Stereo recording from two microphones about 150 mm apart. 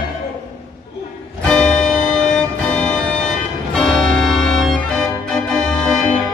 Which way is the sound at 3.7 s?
Centre (ahead or behind).